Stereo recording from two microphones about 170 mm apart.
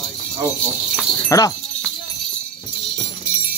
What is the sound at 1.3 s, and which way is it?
Speech, 20° left (ahead or behind).